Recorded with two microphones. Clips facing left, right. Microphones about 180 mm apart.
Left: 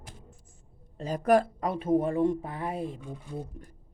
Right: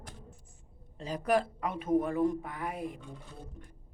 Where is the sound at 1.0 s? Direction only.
45° left (ahead or behind); by 3.0 s 30° left (ahead or behind).